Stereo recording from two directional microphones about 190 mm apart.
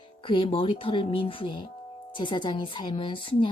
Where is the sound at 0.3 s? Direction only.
25° left (ahead or behind).